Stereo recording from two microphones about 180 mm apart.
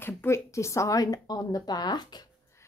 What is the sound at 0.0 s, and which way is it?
Speech, 15° left (ahead or behind).